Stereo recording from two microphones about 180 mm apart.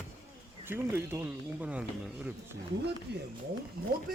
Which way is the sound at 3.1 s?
65° right (ahead or behind).